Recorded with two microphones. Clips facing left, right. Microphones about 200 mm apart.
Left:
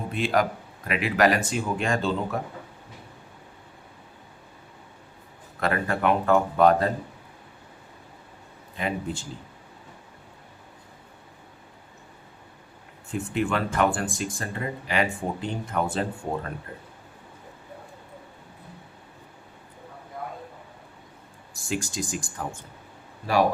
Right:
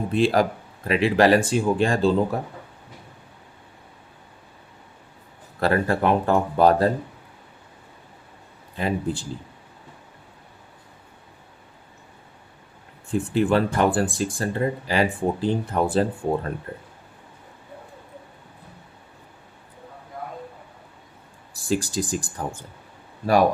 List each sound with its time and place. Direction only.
0.1 s speech: 30° right (ahead or behind)
5.5 s speech: 35° right (ahead or behind)
8.8 s speech: 35° right (ahead or behind)
13.1 s speech: 35° right (ahead or behind)
21.5 s speech: 35° right (ahead or behind)